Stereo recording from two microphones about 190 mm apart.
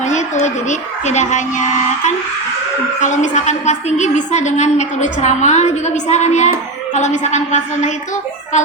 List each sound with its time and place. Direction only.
0.0 s a woman's voice: 35° left (ahead or behind)